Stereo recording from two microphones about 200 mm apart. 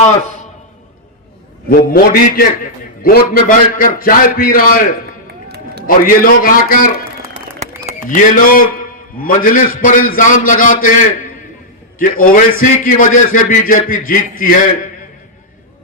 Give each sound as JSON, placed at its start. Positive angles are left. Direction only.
{"t": 1.7, "sound": "a man's voice", "side_deg": 45}
{"t": 5.3, "sound": "run", "side_deg": -55}
{"t": 5.8, "sound": "a man's voice", "side_deg": 45}
{"t": 8.1, "sound": "a man's voice", "side_deg": 45}